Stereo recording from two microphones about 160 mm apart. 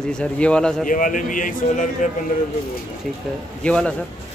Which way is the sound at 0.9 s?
55° left (ahead or behind).